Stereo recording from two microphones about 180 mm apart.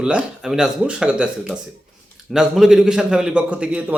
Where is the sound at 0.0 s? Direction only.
5° right (ahead or behind).